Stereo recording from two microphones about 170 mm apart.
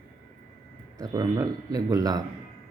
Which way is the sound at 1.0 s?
20° right (ahead or behind).